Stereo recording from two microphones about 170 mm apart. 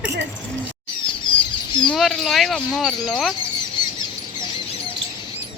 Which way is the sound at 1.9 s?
Centre (ahead or behind).